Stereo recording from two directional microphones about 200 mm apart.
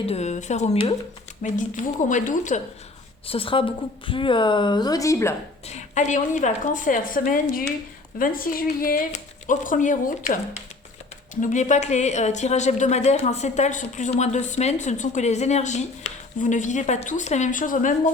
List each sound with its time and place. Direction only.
0.0 s speech: 30° left (ahead or behind)
3.2 s a woman's voice: 25° left (ahead or behind)
5.6 s a woman's voice: 35° left (ahead or behind)
11.3 s speech: 40° left (ahead or behind)